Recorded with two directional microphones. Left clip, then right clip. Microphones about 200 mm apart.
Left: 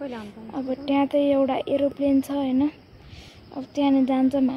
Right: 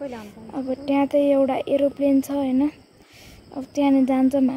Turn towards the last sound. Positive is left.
turn(degrees=-10)  # may be behind; listen again after turning